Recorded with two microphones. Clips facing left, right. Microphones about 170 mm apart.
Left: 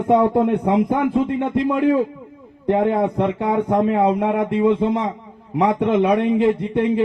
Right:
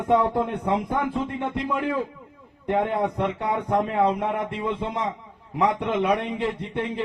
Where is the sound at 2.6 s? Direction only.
20° left (ahead or behind).